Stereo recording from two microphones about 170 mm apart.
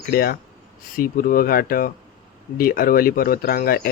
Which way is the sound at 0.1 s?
65° left (ahead or behind).